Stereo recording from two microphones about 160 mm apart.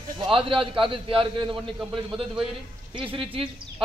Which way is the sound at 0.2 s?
35° right (ahead or behind).